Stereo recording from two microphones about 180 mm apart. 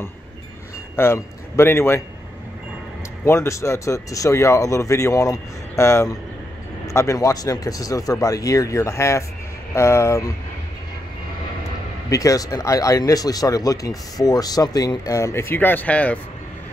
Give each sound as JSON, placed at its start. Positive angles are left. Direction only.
{"t": 0.9, "sound": "a man's voice", "side_deg": 15}
{"t": 3.3, "sound": "speech", "side_deg": 15}
{"t": 12.1, "sound": "speech", "side_deg": 20}